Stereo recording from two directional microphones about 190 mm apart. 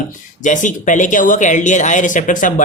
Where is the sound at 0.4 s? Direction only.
40° left (ahead or behind).